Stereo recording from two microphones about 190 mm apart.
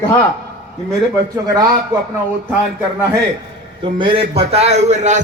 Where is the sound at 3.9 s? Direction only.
25° right (ahead or behind).